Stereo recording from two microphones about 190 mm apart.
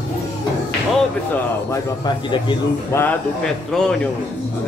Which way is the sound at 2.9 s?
5° left (ahead or behind).